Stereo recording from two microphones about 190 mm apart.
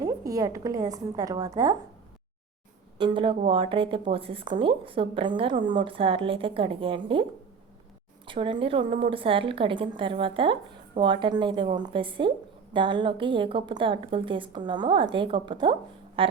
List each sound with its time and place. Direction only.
0.0 s a woman's voice: 20° right (ahead or behind)
3.0 s speech: 25° right (ahead or behind)
8.3 s speech: 25° right (ahead or behind)